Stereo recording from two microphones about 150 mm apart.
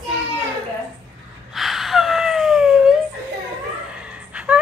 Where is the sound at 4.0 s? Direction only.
10° right (ahead or behind).